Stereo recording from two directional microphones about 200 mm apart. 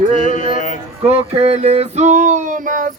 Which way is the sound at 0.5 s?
40° left (ahead or behind).